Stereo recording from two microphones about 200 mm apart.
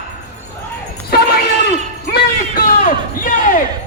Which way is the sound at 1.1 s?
50° left (ahead or behind).